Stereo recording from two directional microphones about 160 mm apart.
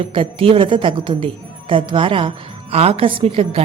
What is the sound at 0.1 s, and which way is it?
A woman's voice, 35° right (ahead or behind).